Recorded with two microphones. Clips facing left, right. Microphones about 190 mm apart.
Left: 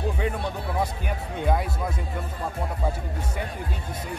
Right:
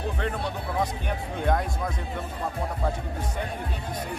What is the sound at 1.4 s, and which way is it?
Speech, 5° left (ahead or behind).